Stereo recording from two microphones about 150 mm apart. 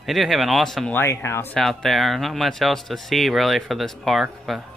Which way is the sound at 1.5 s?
Centre (ahead or behind).